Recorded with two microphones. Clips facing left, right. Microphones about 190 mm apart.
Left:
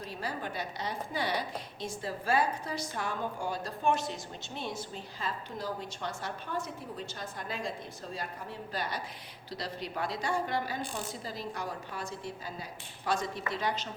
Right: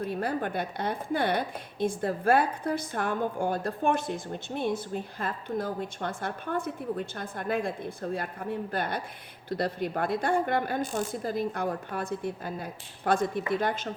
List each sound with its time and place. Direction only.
0.0 s a woman's voice: 55° right (ahead or behind)